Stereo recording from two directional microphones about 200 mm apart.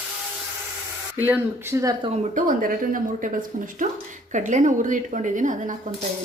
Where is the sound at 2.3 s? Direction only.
45° right (ahead or behind).